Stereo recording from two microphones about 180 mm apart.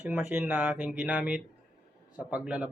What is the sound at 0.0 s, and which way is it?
A man's voice, 10° right (ahead or behind).